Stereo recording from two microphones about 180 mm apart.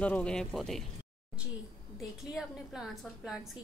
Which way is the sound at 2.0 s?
Centre (ahead or behind).